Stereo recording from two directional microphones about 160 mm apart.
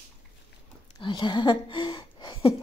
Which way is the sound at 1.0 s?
30° left (ahead or behind).